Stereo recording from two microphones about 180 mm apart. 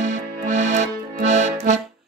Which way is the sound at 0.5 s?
40° right (ahead or behind).